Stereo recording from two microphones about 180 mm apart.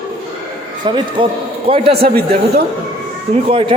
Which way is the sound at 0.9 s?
25° right (ahead or behind).